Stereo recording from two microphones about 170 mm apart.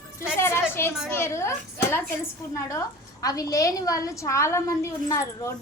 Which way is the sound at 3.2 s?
20° left (ahead or behind).